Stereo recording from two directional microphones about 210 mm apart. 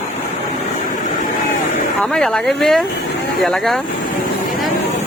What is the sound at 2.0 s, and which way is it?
Speech, 5° left (ahead or behind).